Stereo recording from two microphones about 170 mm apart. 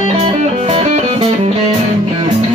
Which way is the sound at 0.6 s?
40° right (ahead or behind).